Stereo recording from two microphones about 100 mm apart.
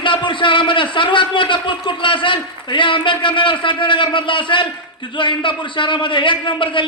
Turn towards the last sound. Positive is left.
turn(degrees=55)  # may be behind; listen again after turning